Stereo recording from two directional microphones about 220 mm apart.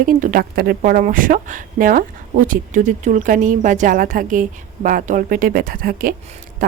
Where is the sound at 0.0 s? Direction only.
40° right (ahead or behind).